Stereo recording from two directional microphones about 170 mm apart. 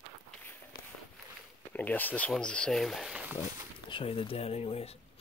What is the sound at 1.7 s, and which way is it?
Speech, 10° left (ahead or behind).